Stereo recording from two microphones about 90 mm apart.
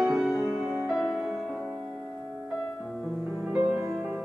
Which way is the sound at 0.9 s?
10° right (ahead or behind).